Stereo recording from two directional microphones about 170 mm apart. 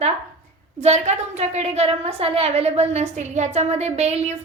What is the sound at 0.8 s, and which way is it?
A woman's voice, 40° right (ahead or behind).